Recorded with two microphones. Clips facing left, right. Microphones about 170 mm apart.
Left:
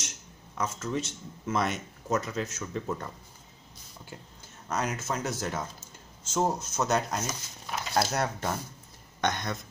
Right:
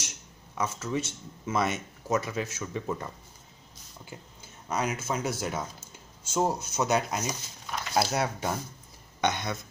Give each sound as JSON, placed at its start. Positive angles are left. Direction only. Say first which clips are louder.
{"t": 0.6, "sound": "speech", "louder": "right 1 dB", "side_deg": -5}
{"t": 4.7, "sound": "speech", "louder": "right 1 dB", "side_deg": -5}